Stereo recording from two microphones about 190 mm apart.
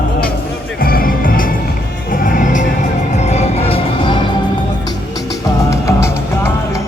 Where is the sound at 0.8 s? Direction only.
50° left (ahead or behind); by 4.2 s 30° left (ahead or behind).